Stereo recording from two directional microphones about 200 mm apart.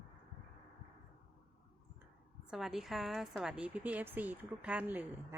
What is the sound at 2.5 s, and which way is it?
A woman's voice, centre (ahead or behind).